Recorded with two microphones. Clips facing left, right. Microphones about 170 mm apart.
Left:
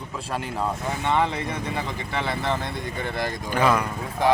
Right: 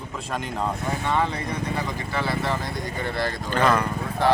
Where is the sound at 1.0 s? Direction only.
20° left (ahead or behind).